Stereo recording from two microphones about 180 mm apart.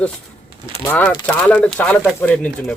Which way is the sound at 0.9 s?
10° left (ahead or behind).